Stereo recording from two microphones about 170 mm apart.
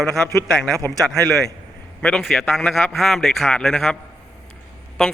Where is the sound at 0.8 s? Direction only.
10° left (ahead or behind).